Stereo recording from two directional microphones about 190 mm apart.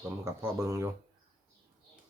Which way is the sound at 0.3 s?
15° right (ahead or behind).